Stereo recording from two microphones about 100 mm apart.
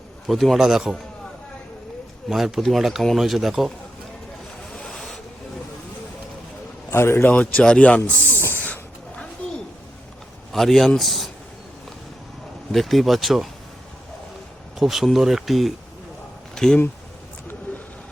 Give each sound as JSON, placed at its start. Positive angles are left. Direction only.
{"t": 0.3, "sound": "speech", "side_deg": 0}
{"t": 2.3, "sound": "speech", "side_deg": 0}
{"t": 4.7, "sound": "boat", "side_deg": 5}
{"t": 6.9, "sound": "a man's voice", "side_deg": 25}
{"t": 7.3, "sound": "snake", "side_deg": 15}
{"t": 10.5, "sound": "speech", "side_deg": 0}
{"t": 12.7, "sound": "speech", "side_deg": 0}
{"t": 14.8, "sound": "speech", "side_deg": 0}